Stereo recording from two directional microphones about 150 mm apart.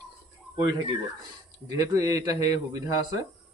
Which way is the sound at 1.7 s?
25° right (ahead or behind).